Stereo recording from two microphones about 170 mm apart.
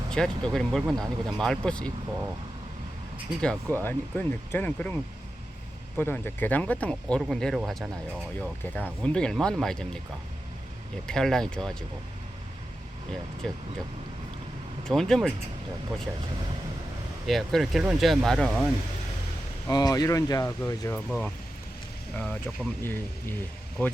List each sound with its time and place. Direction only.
0.1 s speech: 5° left (ahead or behind)
3.4 s speech: 5° left (ahead or behind)
6.0 s speech: 10° left (ahead or behind)
11.0 s speech: 5° left (ahead or behind)
13.4 s speech: centre (ahead or behind)
14.8 s speech: 5° left (ahead or behind)
17.2 s speech: centre (ahead or behind)
19.6 s speech: 20° left (ahead or behind)
22.1 s speech: 5° left (ahead or behind)